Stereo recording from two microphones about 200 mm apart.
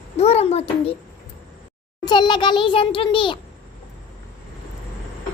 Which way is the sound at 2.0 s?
20° left (ahead or behind).